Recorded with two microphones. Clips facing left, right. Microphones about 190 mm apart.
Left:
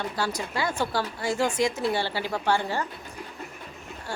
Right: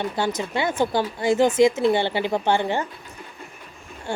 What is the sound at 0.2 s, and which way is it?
Speech, 25° right (ahead or behind).